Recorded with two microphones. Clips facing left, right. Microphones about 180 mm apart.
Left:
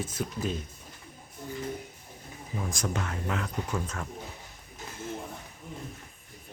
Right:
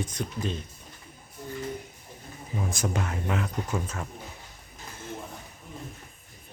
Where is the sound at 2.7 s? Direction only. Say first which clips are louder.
Right 3 dB; 10° right (ahead or behind).